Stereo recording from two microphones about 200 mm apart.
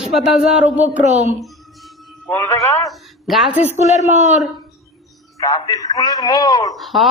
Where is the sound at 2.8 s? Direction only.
Centre (ahead or behind).